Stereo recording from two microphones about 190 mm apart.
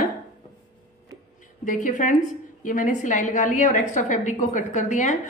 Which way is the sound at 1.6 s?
45° left (ahead or behind).